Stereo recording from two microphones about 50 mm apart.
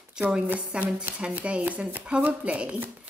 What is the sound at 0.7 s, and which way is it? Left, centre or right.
Speech, right.